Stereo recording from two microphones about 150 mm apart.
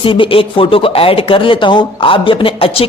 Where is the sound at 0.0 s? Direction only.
35° left (ahead or behind).